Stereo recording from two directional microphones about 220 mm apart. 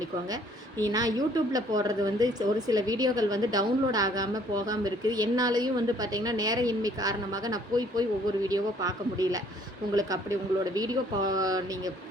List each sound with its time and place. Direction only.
0.3 s a woman's voice: 15° right (ahead or behind)